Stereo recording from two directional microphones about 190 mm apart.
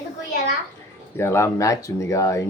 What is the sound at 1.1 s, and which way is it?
Speech, 15° left (ahead or behind).